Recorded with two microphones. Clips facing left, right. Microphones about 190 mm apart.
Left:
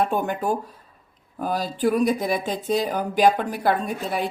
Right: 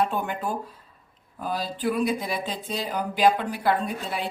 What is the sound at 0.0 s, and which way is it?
Speech, 45° left (ahead or behind).